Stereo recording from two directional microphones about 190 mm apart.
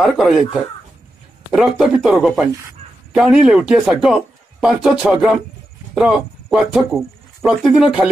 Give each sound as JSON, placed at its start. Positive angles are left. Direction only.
{"t": 0.0, "sound": "a man's voice", "side_deg": 0}